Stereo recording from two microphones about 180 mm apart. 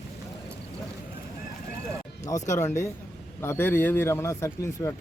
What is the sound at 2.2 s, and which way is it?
Speech, 15° left (ahead or behind).